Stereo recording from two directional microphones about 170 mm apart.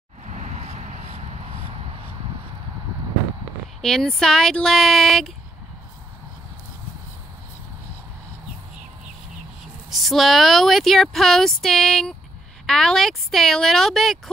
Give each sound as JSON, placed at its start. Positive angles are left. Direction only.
{"t": 0.4, "sound": "a sound", "side_deg": -40}
{"t": 3.8, "sound": "speech", "side_deg": 5}
{"t": 9.8, "sound": "speech", "side_deg": 0}